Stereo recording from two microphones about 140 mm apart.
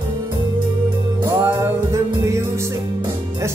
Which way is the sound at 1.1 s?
25° right (ahead or behind).